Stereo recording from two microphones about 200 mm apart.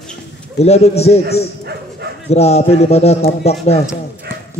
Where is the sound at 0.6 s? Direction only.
30° left (ahead or behind).